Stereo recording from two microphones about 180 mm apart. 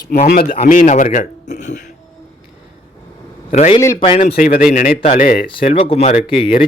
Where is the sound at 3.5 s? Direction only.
35° left (ahead or behind).